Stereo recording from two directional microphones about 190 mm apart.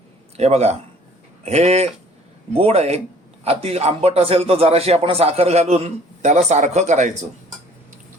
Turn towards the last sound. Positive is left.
turn(degrees=-40)  # may be behind; listen again after turning